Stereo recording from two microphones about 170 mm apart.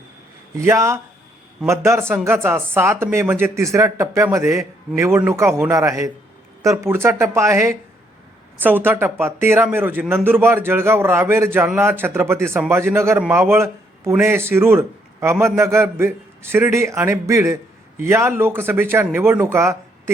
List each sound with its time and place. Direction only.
0.5 s a man's voice: 15° right (ahead or behind)